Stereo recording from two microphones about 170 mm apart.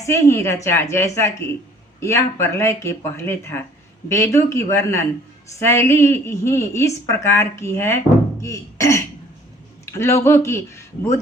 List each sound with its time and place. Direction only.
0.0 s speech: 15° left (ahead or behind)